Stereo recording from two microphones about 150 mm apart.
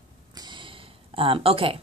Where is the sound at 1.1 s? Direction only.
35° right (ahead or behind).